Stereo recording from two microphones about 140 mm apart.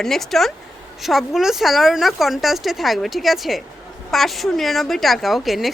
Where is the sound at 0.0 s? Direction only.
Centre (ahead or behind).